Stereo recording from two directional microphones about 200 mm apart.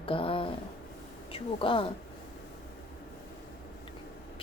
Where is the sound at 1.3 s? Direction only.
25° left (ahead or behind).